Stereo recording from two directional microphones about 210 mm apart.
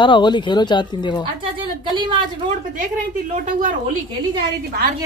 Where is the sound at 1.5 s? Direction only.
20° right (ahead or behind).